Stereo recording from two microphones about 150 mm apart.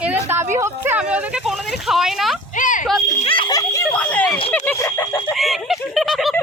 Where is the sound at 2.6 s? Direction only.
60° left (ahead or behind).